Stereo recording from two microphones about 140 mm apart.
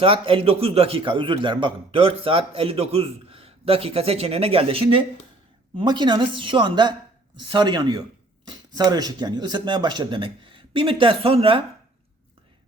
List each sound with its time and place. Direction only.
0.0 s a man's voice: 40° right (ahead or behind)